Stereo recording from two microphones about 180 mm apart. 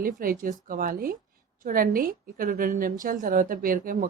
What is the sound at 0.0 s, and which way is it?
Speech, 50° right (ahead or behind).